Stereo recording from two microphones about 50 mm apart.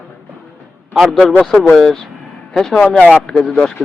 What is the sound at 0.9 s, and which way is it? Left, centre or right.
Speech, centre.